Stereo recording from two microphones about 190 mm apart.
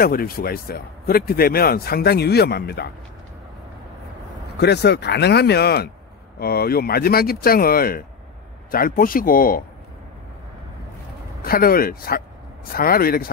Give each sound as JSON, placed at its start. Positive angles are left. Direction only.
{"t": 0.0, "sound": "speech", "side_deg": 50}
{"t": 4.6, "sound": "speech", "side_deg": 60}
{"t": 11.4, "sound": "speech", "side_deg": 50}